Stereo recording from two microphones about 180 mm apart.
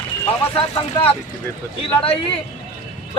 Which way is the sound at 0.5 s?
30° left (ahead or behind).